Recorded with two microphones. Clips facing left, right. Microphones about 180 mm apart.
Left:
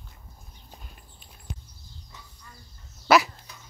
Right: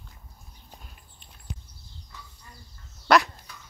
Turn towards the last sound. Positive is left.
turn(degrees=5)  # may be behind; listen again after turning